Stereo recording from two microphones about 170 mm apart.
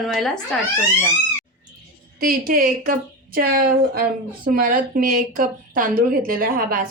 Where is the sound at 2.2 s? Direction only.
55° right (ahead or behind).